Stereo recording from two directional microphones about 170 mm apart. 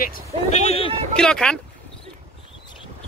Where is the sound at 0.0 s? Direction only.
50° left (ahead or behind).